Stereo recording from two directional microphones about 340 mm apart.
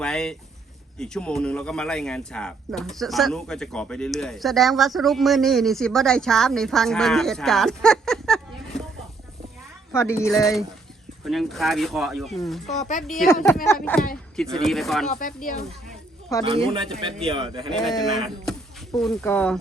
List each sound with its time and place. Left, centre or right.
0.0 s speech: centre
9.9 s speech: centre
12.8 s speech: left
13.1 s speech: centre
15.1 s speech: left
16.3 s speech: centre
17.2 s speech: centre
18.0 s speech: centre